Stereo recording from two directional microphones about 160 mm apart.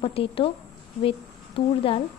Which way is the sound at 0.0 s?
35° left (ahead or behind).